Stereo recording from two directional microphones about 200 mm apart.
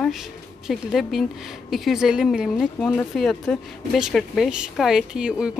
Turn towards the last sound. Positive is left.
turn(degrees=-5)  # may be behind; listen again after turning